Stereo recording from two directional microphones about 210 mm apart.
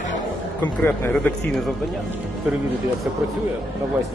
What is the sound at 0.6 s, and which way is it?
A man's voice, 10° left (ahead or behind).